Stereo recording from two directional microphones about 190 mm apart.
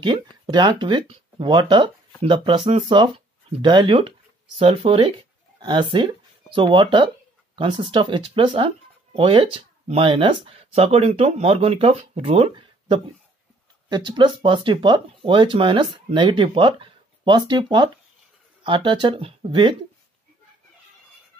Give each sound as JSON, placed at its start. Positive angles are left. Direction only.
{"t": 0.0, "sound": "speech", "side_deg": -25}